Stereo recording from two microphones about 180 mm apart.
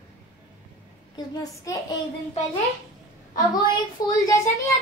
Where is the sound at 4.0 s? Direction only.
20° left (ahead or behind).